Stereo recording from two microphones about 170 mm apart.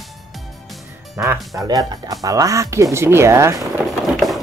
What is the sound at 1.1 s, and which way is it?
Speech, 15° right (ahead or behind).